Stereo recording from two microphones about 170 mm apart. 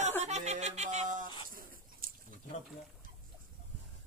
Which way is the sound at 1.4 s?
55° right (ahead or behind).